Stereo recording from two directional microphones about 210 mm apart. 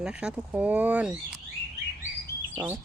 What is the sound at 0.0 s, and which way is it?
Speech, 5° right (ahead or behind).